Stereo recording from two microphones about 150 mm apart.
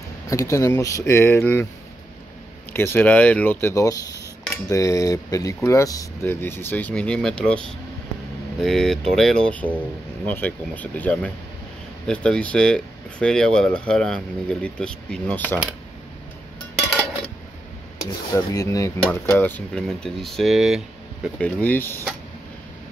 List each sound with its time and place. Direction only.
0.3 s speech: 20° left (ahead or behind)
2.7 s speech: 15° left (ahead or behind)
8.5 s speech: 5° left (ahead or behind)
18.3 s speech: 25° left (ahead or behind); by 21.3 s centre (ahead or behind)
21.4 s speech: 10° left (ahead or behind)